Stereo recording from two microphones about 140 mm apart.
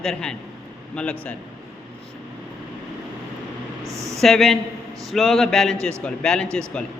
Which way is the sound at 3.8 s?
20° right (ahead or behind).